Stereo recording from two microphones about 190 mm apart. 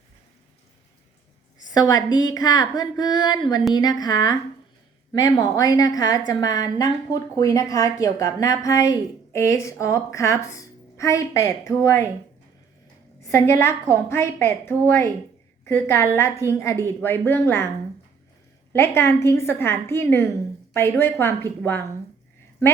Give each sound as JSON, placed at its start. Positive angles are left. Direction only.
{"t": 1.7, "sound": "a woman's voice", "side_deg": 20}
{"t": 13.2, "sound": "a woman's voice", "side_deg": 15}
{"t": 18.7, "sound": "a woman's voice", "side_deg": 15}